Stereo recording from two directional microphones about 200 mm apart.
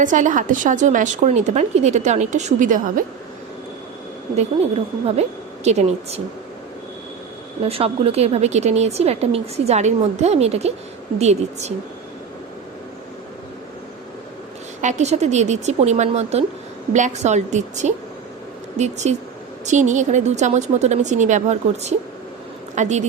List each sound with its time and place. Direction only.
0.0 s a woman's voice: 40° right (ahead or behind)
4.4 s a woman's voice: 30° right (ahead or behind)
7.7 s a woman's voice: 30° right (ahead or behind)
14.8 s a woman's voice: 35° right (ahead or behind)